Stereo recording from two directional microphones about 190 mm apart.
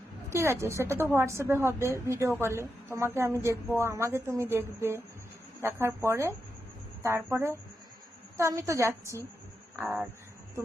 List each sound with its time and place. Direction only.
0.3 s a woman's voice: 15° right (ahead or behind)